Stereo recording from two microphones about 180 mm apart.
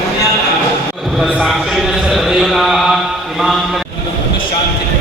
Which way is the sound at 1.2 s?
5° right (ahead or behind).